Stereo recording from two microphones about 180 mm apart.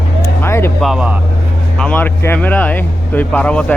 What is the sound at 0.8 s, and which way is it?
Speech, 5° right (ahead or behind).